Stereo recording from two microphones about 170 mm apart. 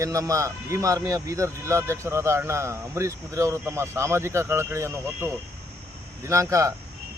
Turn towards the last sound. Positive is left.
turn(degrees=-20)  # may be behind; listen again after turning